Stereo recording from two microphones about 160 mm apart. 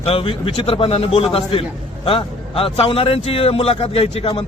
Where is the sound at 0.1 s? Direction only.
35° left (ahead or behind).